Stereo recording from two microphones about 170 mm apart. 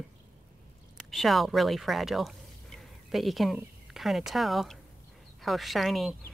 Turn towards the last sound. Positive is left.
turn(degrees=0)  # may be behind; listen again after turning